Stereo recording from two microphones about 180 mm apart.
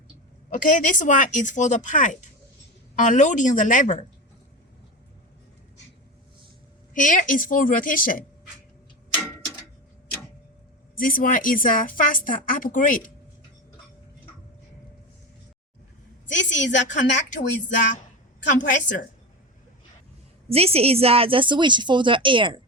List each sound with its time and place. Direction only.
0.5 s a woman's voice: 50° left (ahead or behind)
6.9 s a woman's voice: 45° left (ahead or behind)
10.9 s a woman's voice: 50° left (ahead or behind)
16.3 s a woman's voice: 80° left
17.2 s a woman's voice: 45° left (ahead or behind)
20.5 s a woman's voice: 35° right (ahead or behind)